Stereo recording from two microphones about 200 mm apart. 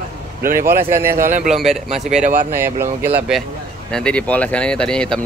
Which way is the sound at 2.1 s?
40° right (ahead or behind).